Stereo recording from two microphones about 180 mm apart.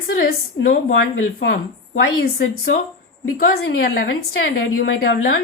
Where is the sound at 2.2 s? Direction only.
60° left (ahead or behind).